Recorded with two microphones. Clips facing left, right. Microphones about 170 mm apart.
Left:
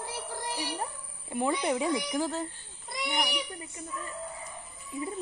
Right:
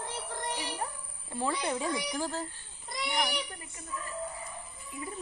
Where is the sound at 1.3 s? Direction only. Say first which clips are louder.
Left 4 dB; 15° left (ahead or behind).